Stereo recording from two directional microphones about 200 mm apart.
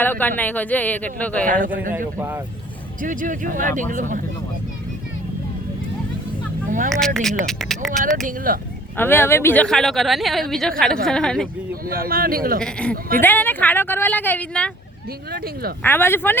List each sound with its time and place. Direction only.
0.0 s speech: 10° left (ahead or behind)
1.5 s speech: 40° right (ahead or behind)
2.1 s speech: 10° right (ahead or behind)
3.0 s speech: 40° right (ahead or behind)
6.7 s a sound: 40° right (ahead or behind)
6.9 s speech: centre (ahead or behind)
8.5 s speech: 45° right (ahead or behind)
9.0 s speech: 10° left (ahead or behind)
11.7 s speech: 45° right (ahead or behind)
12.5 s speech: 5° left (ahead or behind)
15.3 s speech: 50° right (ahead or behind)
15.8 s speech: 10° left (ahead or behind)